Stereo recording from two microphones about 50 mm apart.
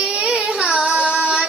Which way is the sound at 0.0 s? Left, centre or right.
Centre.